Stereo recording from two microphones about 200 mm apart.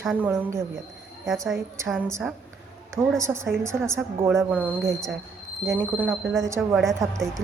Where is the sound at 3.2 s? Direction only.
15° right (ahead or behind).